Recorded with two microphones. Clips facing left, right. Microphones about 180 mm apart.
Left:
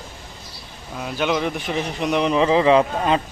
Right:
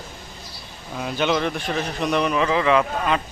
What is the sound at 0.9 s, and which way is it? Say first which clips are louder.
Speech: even; 5° left (ahead or behind).